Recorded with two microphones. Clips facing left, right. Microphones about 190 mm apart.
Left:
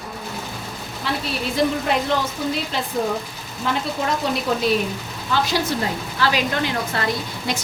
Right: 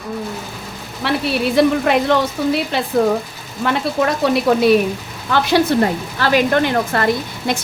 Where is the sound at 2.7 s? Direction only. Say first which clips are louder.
Right 7 dB; 70° right (ahead or behind).